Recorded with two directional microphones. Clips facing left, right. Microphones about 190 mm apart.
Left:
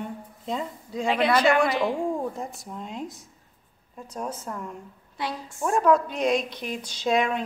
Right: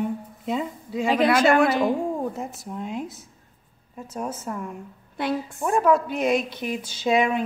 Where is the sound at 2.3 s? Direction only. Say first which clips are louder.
Right 3 dB; 5° right (ahead or behind).